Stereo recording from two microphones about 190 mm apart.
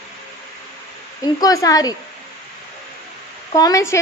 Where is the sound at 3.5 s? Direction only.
20° left (ahead or behind).